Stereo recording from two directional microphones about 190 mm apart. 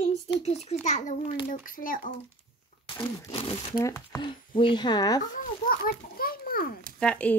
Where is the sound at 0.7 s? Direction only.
35° left (ahead or behind).